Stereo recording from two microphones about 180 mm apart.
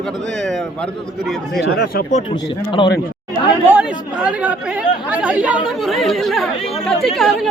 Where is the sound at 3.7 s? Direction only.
5° right (ahead or behind).